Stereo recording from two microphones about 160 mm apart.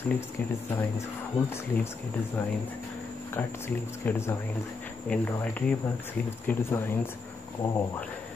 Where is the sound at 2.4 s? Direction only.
10° left (ahead or behind).